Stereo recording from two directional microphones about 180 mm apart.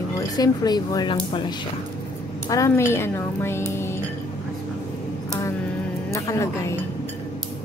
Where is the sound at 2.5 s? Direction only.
15° left (ahead or behind).